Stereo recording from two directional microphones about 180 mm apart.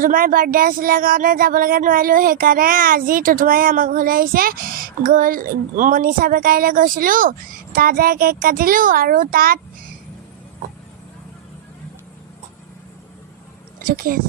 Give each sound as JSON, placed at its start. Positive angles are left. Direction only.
{"t": 0.0, "sound": "speech", "side_deg": -50}
{"t": 13.8, "sound": "speech", "side_deg": -50}